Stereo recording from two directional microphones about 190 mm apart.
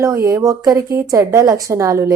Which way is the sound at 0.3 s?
20° right (ahead or behind).